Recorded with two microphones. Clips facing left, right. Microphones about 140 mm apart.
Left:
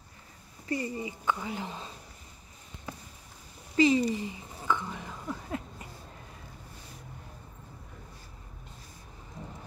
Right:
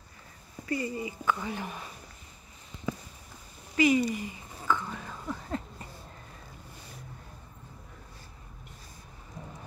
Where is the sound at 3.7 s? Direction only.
30° left (ahead or behind).